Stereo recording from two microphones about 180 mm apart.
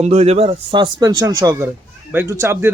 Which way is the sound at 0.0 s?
35° right (ahead or behind).